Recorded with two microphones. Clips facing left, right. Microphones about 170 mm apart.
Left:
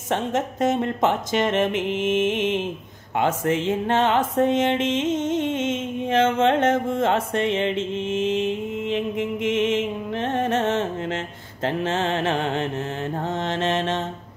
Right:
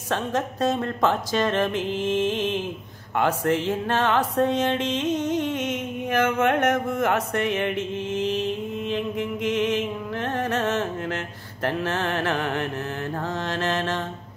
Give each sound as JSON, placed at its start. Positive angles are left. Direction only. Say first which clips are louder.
{"t": 0.1, "sound": "music", "louder": "left 2 dB", "side_deg": 20}